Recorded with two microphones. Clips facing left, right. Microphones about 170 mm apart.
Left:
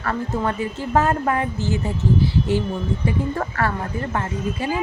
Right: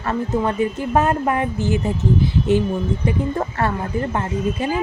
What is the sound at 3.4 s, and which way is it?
Speech, 25° right (ahead or behind).